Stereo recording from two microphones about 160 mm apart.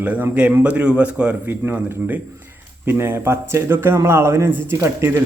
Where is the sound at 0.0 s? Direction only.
10° right (ahead or behind).